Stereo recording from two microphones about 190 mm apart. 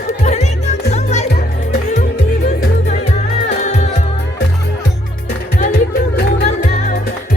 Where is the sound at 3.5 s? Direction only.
35° left (ahead or behind).